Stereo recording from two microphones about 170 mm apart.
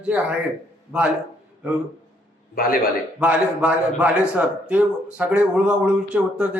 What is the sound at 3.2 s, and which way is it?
A man's voice, 10° right (ahead or behind).